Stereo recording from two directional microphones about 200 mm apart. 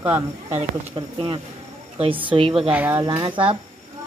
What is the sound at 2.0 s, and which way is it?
Speech, 25° right (ahead or behind).